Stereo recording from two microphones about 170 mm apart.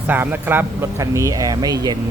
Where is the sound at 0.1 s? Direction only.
10° right (ahead or behind).